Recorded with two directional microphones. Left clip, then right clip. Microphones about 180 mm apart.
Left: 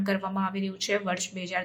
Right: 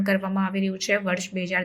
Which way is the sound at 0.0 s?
15° right (ahead or behind).